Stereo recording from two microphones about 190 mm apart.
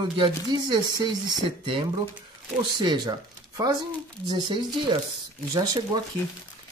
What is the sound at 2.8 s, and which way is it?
Speech, 20° right (ahead or behind).